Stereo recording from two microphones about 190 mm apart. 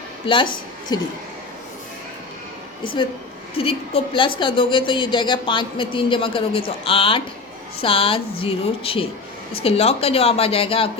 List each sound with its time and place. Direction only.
0.3 s a woman's voice: 30° left (ahead or behind)
2.8 s a woman's voice: 25° left (ahead or behind)